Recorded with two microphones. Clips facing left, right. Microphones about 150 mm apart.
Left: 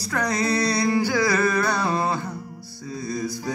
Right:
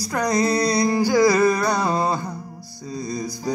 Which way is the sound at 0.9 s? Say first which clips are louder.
Right 2 dB; 40° right (ahead or behind).